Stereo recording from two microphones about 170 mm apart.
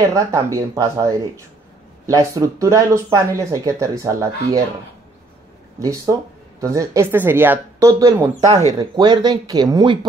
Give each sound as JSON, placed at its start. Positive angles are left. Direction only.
{"t": 0.1, "sound": "speech", "side_deg": -20}
{"t": 5.8, "sound": "speech", "side_deg": -20}
{"t": 8.5, "sound": "speech", "side_deg": -40}
{"t": 8.9, "sound": "speech", "side_deg": -25}